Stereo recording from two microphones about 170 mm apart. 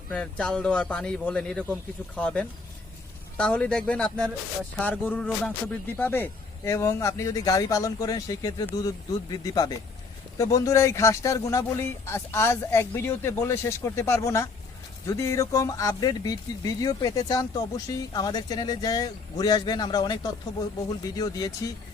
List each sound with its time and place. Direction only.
0.1 s a man's voice: 5° left (ahead or behind); by 21.5 s 20° left (ahead or behind)